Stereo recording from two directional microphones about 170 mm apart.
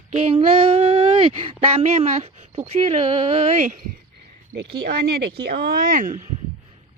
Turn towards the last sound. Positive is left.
turn(degrees=-50)  # may be behind; listen again after turning